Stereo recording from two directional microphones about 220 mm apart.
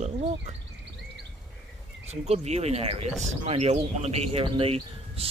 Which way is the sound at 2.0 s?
30° right (ahead or behind).